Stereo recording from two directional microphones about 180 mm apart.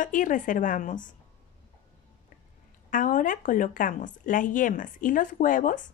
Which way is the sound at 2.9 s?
45° left (ahead or behind).